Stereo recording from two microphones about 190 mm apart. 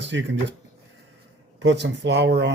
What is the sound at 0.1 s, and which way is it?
Speech, 70° right (ahead or behind).